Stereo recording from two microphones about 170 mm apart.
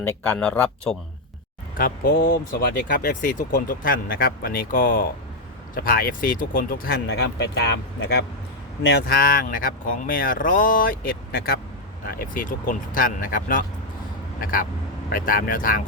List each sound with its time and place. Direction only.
0.0 s speech: 10° left (ahead or behind)
2.0 s speech: 90° left; by 15.8 s 55° left (ahead or behind)